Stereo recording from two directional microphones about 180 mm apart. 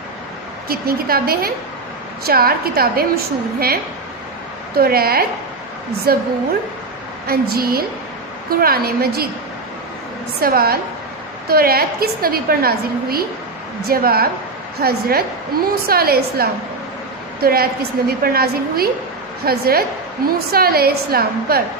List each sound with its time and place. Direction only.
0.7 s a woman's voice: 60° right (ahead or behind)
7.2 s a woman's voice: 60° right (ahead or behind)
10.4 s a woman's voice: 60° right (ahead or behind)